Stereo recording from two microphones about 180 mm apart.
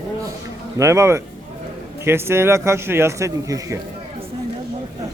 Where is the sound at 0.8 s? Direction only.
15° right (ahead or behind).